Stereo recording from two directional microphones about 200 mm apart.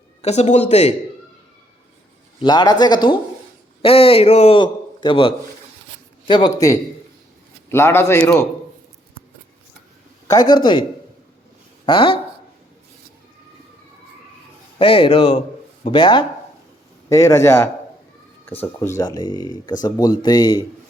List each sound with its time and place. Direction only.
0.2 s a man's voice: 35° left (ahead or behind)
2.4 s a man's voice: 20° left (ahead or behind)
10.2 s a man's voice: 20° left (ahead or behind)
11.9 s a man's voice: 25° left (ahead or behind)
14.8 s a man's voice: 25° left (ahead or behind)